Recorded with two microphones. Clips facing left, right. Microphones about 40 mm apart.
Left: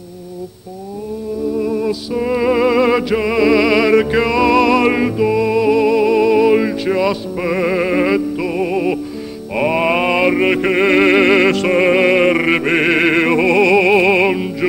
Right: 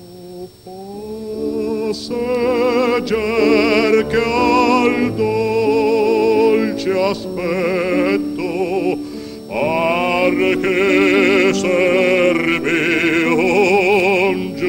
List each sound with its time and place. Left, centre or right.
1.6 s music: centre